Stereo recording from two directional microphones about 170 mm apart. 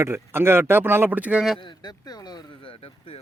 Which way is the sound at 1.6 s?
25° left (ahead or behind).